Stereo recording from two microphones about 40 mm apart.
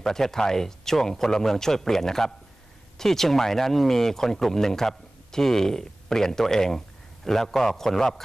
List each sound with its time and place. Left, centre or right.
0.0 s speech: centre